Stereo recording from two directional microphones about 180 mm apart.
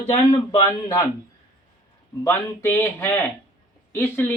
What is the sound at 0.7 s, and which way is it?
Speech, 15° left (ahead or behind).